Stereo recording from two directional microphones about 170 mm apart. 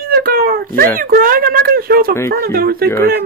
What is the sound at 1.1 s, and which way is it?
Speech, 60° right (ahead or behind).